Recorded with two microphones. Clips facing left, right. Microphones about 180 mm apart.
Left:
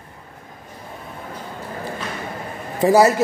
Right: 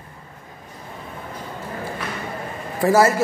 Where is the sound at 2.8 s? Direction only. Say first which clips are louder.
Left 2 dB; 20° left (ahead or behind).